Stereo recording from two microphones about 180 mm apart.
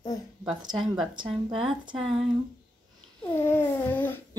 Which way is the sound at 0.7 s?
Centre (ahead or behind).